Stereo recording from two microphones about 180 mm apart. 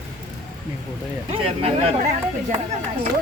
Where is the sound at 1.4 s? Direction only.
35° right (ahead or behind).